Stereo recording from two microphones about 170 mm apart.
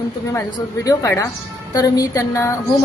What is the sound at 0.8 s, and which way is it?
A woman's voice, 20° left (ahead or behind).